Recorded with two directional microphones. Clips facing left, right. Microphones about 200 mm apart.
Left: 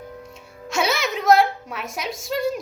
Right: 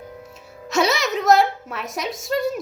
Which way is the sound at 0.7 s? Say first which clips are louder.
Right 3 dB; centre (ahead or behind).